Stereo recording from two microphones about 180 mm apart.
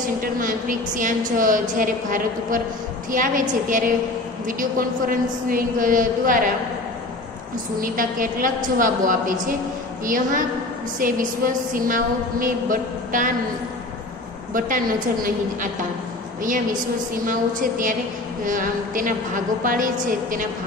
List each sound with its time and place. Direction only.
0.2 s a woman's voice: 50° right (ahead or behind)
7.8 s a woman's voice: 50° right (ahead or behind)
14.5 s a woman's voice: 50° right (ahead or behind)
17.3 s a woman's voice: 50° right (ahead or behind)